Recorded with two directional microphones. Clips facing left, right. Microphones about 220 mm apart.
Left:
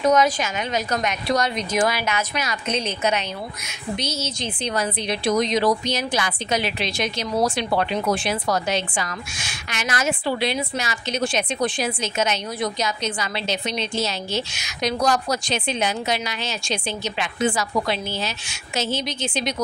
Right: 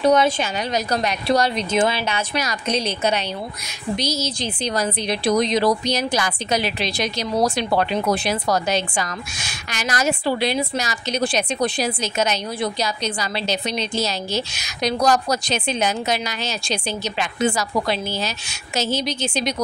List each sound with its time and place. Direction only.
0.0 s a woman's voice: 30° right (ahead or behind)